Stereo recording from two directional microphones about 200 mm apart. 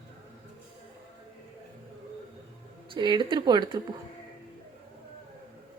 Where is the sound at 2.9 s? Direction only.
25° right (ahead or behind).